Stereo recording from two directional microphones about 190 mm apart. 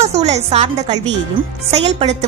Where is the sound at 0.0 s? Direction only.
35° right (ahead or behind).